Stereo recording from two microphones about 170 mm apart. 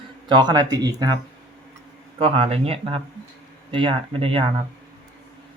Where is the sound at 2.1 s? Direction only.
35° right (ahead or behind).